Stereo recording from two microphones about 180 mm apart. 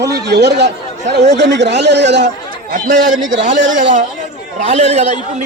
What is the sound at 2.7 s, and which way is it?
A man's voice, 45° right (ahead or behind).